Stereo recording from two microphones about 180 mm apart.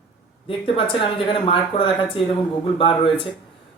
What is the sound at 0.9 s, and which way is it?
Speech, 30° left (ahead or behind).